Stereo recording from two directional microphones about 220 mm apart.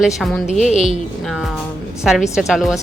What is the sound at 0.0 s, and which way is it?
Speech, centre (ahead or behind).